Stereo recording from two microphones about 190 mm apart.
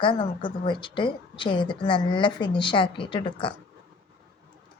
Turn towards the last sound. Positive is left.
turn(degrees=25)  # may be behind; listen again after turning